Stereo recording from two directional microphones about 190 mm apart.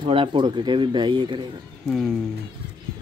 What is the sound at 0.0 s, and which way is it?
Speech, 25° right (ahead or behind).